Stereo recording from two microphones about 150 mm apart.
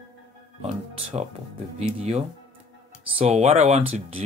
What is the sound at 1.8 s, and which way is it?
Speech, 45° right (ahead or behind).